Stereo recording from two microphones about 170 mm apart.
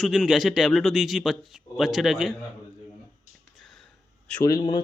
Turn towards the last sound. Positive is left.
turn(degrees=25)  # may be behind; listen again after turning